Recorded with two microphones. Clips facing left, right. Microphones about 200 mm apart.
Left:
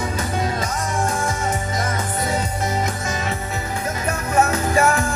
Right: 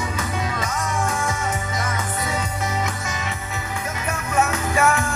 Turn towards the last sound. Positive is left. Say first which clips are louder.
# left 2 dB
turn(degrees=40)  # may be behind; listen again after turning